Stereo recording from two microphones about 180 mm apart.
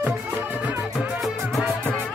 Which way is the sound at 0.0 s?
10° right (ahead or behind).